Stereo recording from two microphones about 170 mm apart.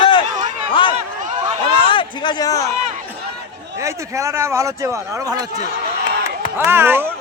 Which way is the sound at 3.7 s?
15° right (ahead or behind).